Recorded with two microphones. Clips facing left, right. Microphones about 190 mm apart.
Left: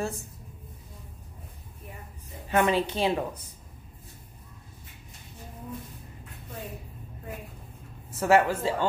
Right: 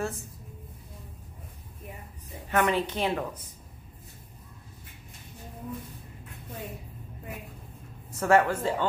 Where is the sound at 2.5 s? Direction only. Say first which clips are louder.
Left 2 dB; 25° left (ahead or behind).